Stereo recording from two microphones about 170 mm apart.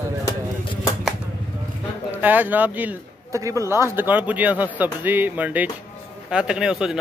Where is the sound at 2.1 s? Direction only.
10° right (ahead or behind).